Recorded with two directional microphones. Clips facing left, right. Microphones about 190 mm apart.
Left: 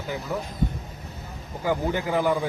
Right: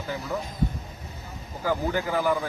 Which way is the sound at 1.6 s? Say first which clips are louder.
Left 1 dB; 20° left (ahead or behind).